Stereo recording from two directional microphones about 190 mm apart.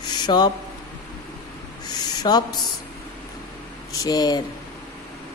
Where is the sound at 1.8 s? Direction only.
20° left (ahead or behind).